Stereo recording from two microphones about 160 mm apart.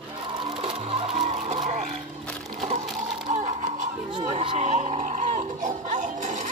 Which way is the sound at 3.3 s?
45° right (ahead or behind).